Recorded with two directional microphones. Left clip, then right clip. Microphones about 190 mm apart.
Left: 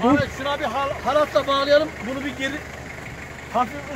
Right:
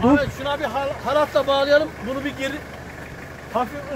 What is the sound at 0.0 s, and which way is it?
Speech, 35° right (ahead or behind).